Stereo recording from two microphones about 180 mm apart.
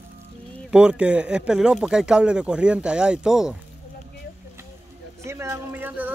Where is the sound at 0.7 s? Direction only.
5° right (ahead or behind).